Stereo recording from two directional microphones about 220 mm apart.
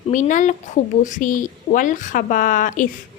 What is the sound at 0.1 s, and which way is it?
A woman's voice, 35° left (ahead or behind).